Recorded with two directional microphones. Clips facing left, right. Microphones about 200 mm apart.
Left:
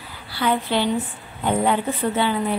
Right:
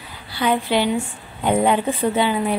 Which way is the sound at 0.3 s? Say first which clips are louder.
Right 2 dB; 15° right (ahead or behind).